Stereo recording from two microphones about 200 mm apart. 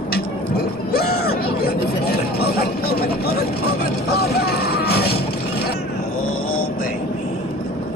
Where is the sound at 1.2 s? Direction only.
50° left (ahead or behind).